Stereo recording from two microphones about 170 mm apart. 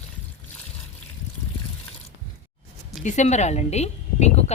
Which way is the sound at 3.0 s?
45° left (ahead or behind).